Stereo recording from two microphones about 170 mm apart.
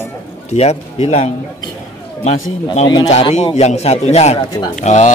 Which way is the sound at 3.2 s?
40° left (ahead or behind).